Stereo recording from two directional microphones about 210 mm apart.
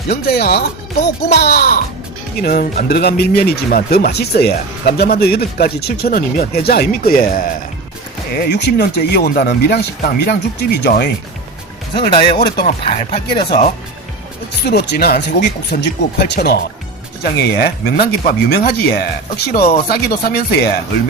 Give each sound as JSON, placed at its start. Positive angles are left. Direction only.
{"t": 0.1, "sound": "speech", "side_deg": 50}
{"t": 11.9, "sound": "speech", "side_deg": 25}
{"t": 14.6, "sound": "speech", "side_deg": 50}